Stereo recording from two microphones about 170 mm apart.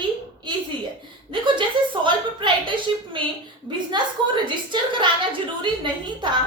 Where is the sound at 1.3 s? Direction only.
30° right (ahead or behind).